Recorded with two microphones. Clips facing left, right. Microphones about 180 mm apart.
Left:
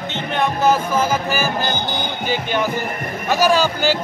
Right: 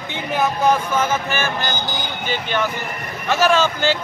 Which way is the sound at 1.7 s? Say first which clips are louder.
Left 3 dB; 55° left (ahead or behind).